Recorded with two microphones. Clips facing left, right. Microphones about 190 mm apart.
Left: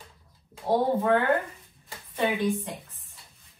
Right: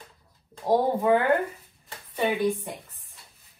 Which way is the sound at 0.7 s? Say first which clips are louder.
Right 2 dB; 15° right (ahead or behind).